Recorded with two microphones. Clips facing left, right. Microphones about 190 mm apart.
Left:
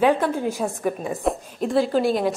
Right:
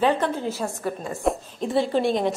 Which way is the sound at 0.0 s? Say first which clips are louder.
Left 3 dB; 10° left (ahead or behind).